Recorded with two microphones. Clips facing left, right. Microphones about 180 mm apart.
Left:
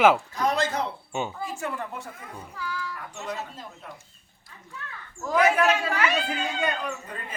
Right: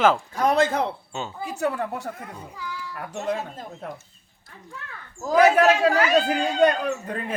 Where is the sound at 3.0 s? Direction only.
60° right (ahead or behind).